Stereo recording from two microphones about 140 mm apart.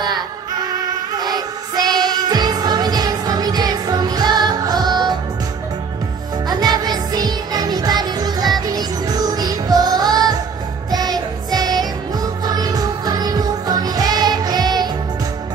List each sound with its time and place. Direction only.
1.1 s music: 30° right (ahead or behind)
6.5 s music: 30° right (ahead or behind)